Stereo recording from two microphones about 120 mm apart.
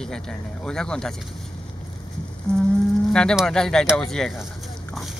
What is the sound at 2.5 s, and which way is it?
Cattle, 5° left (ahead or behind).